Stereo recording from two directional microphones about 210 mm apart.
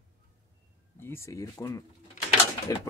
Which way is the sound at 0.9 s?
10° left (ahead or behind).